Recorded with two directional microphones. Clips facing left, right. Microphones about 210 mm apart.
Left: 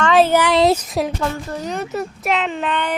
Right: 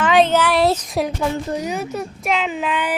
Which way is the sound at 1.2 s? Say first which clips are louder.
Right 2 dB; 15° right (ahead or behind).